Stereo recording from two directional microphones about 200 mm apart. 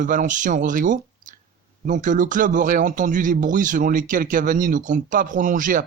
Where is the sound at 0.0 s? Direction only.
40° right (ahead or behind).